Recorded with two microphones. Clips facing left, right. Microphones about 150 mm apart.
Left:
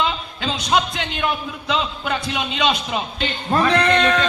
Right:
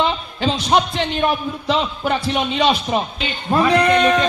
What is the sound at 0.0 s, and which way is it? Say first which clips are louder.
A man's voice: right 4 dB; 30° right (ahead or behind).